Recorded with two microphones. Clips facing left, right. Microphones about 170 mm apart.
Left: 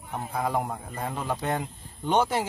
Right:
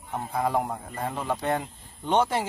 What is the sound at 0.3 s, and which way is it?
A man's voice, centre (ahead or behind).